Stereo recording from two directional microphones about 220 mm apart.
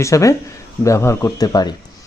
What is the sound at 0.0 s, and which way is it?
Speech, 15° left (ahead or behind).